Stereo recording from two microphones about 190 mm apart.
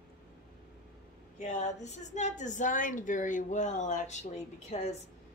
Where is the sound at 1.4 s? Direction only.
40° left (ahead or behind).